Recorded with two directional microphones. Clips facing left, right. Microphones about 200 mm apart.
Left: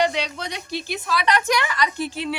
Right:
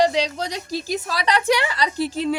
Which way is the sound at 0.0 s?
35° right (ahead or behind).